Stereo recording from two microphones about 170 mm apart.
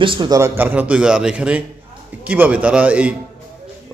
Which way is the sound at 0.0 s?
30° right (ahead or behind).